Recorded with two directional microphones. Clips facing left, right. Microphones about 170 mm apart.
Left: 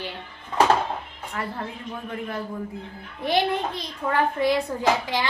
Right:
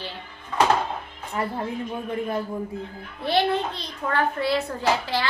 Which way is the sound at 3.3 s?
15° left (ahead or behind).